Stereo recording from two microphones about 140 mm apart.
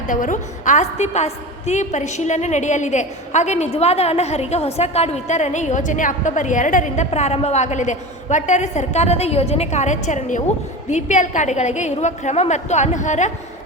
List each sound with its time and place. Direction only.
0.1 s a woman's voice: 70° left (ahead or behind)